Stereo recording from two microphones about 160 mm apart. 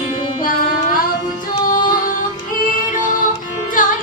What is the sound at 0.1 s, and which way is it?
Music, 60° left (ahead or behind).